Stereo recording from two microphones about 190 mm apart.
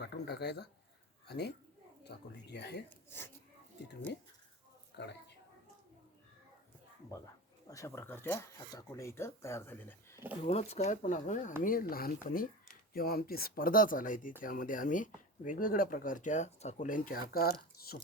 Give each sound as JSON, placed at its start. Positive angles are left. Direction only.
{"t": 0.0, "sound": "a sound", "side_deg": 60}
{"t": 1.3, "sound": "speech", "side_deg": 60}
{"t": 7.7, "sound": "speech", "side_deg": 15}
{"t": 10.4, "sound": "speech", "side_deg": 35}